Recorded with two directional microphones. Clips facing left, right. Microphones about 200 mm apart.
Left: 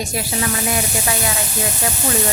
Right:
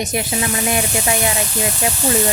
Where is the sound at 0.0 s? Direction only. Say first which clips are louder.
Right 2 dB; 20° right (ahead or behind).